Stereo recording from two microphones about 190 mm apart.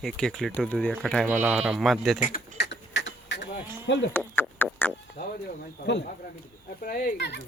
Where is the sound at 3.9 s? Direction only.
70° left (ahead or behind).